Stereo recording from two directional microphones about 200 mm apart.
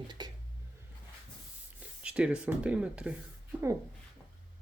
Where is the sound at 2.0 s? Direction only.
5° right (ahead or behind).